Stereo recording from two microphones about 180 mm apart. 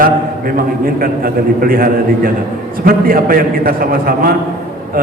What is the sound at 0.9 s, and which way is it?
A man's voice, 55° right (ahead or behind).